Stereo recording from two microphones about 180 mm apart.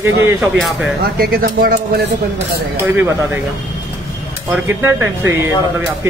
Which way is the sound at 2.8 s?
15° right (ahead or behind).